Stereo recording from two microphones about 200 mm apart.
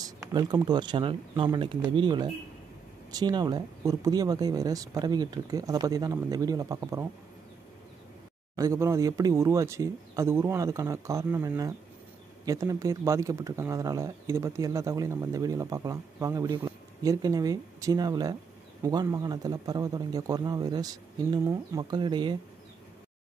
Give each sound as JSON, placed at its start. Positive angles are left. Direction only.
{"t": 0.0, "sound": "speech", "side_deg": -20}
{"t": 8.5, "sound": "speech", "side_deg": -15}